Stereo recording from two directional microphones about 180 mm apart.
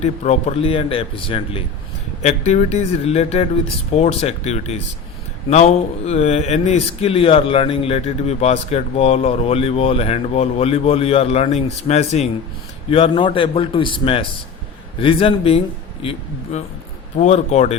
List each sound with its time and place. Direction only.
0.0 s a man's voice: 35° left (ahead or behind)